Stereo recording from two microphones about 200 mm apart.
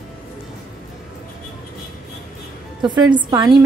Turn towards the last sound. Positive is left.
turn(degrees=-15)  # may be behind; listen again after turning